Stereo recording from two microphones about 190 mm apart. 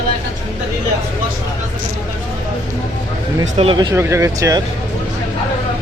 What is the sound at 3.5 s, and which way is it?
Speech, 25° right (ahead or behind).